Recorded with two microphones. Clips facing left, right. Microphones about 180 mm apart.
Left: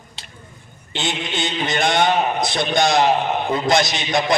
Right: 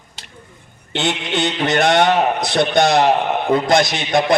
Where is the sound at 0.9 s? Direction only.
70° right (ahead or behind).